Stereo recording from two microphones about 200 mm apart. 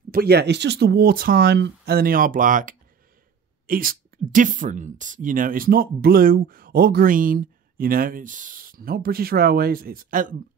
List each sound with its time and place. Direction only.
0.1 s speech: 50° right (ahead or behind)